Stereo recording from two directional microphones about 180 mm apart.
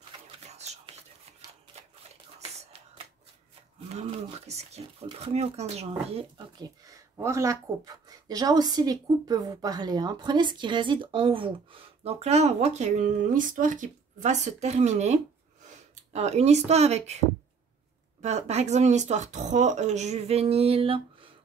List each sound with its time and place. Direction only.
0.5 s whispering: 35° right (ahead or behind)
3.9 s speech: 35° right (ahead or behind)
6.6 s speech: 20° right (ahead or behind); by 17.2 s 35° right (ahead or behind)
18.2 s speech: 40° right (ahead or behind)